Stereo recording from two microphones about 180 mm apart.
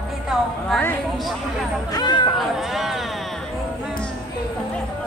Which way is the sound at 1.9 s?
25° left (ahead or behind).